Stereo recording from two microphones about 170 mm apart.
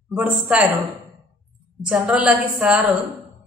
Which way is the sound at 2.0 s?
5° right (ahead or behind).